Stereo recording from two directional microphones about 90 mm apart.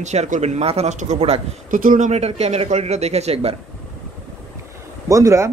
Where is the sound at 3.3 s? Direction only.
90° right.